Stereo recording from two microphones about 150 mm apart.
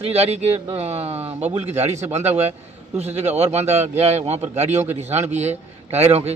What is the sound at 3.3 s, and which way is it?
A man's voice, 45° right (ahead or behind).